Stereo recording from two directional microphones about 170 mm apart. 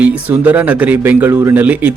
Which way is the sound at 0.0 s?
10° right (ahead or behind).